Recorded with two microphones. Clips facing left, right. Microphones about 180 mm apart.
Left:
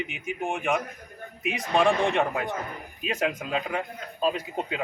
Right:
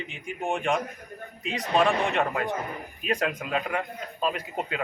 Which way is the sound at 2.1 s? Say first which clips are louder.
Even; 15° left (ahead or behind).